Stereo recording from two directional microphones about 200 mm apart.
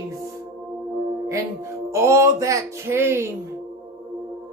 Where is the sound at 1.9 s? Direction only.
15° right (ahead or behind).